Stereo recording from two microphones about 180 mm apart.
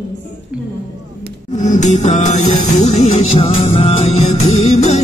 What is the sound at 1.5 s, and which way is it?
Music, 40° left (ahead or behind).